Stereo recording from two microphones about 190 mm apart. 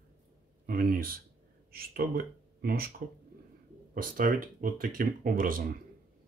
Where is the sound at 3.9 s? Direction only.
45° right (ahead or behind).